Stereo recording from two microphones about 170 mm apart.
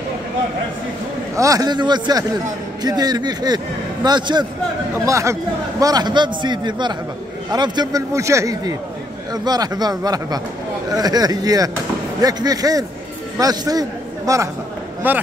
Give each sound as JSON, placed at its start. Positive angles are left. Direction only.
{"t": 1.3, "sound": "a man's voice", "side_deg": -20}